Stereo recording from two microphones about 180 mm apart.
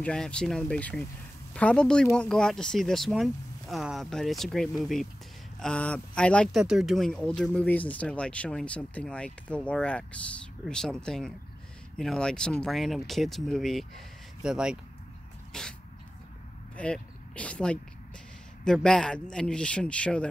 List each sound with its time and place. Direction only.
0.0 s speech: 5° left (ahead or behind)
16.7 s speech: 5° left (ahead or behind)